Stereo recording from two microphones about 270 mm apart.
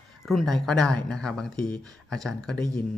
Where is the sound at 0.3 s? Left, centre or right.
Centre.